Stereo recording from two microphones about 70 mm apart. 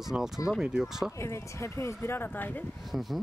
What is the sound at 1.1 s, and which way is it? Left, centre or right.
Speech, left.